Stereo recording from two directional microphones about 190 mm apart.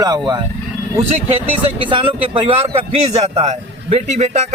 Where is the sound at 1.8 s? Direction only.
25° right (ahead or behind).